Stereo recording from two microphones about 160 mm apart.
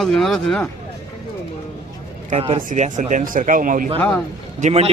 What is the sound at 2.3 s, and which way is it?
Speech, 35° right (ahead or behind).